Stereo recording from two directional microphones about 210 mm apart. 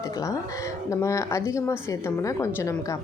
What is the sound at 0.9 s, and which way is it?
A woman's voice, 15° left (ahead or behind).